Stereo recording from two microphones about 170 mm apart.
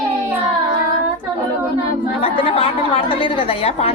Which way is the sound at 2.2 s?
35° left (ahead or behind).